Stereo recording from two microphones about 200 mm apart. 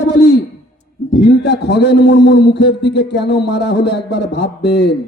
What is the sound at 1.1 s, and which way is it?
A man's voice, 55° left (ahead or behind).